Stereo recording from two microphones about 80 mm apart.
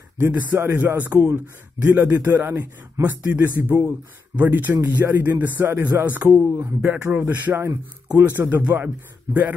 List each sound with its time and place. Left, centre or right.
0.2 s a man's voice: right
6.5 s a man's voice: right